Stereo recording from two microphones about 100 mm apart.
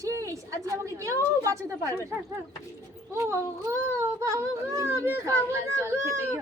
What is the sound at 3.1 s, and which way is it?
Speech, 30° right (ahead or behind).